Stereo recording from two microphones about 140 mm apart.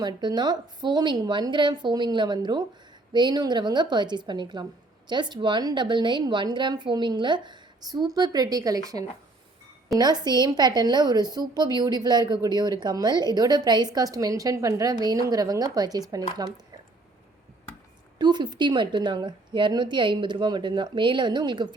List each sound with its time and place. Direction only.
0.0 s a woman's voice: 30° right (ahead or behind)
18.2 s a woman's voice: 30° right (ahead or behind)